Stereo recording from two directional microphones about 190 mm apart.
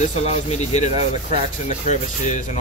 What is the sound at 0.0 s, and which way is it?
Speech, 35° left (ahead or behind).